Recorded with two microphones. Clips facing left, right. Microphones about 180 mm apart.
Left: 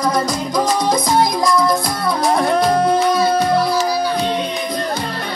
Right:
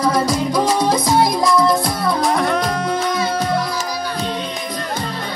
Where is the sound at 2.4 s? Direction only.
35° left (ahead or behind).